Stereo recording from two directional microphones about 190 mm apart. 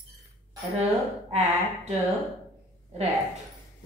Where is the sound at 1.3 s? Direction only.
35° right (ahead or behind).